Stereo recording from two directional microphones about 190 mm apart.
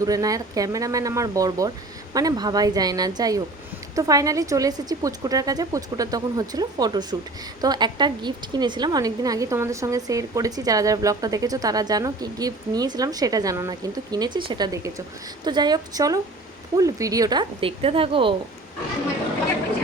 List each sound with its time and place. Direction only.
0.0 s a woman's voice: 20° right (ahead or behind)